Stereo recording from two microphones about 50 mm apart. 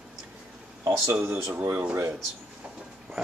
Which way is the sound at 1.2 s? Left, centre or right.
Right.